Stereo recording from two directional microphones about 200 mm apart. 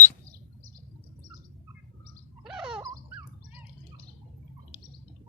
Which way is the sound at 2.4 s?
5° right (ahead or behind).